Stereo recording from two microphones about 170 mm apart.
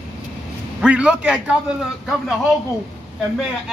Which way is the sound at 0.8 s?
5° right (ahead or behind).